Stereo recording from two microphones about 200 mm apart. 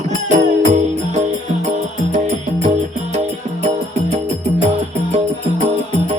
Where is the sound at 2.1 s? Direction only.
35° right (ahead or behind).